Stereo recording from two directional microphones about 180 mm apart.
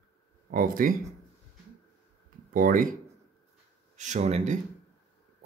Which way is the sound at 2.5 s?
50° right (ahead or behind).